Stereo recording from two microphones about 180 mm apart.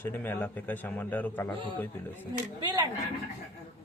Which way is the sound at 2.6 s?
25° right (ahead or behind).